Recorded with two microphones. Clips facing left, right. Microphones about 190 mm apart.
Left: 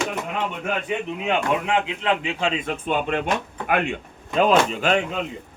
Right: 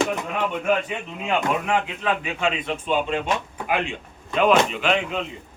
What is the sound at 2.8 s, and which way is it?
Speech, 55° left (ahead or behind).